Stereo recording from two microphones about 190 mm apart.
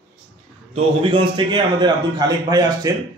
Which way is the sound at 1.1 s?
25° right (ahead or behind).